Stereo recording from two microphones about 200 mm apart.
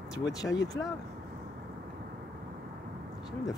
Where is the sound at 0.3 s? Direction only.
15° left (ahead or behind).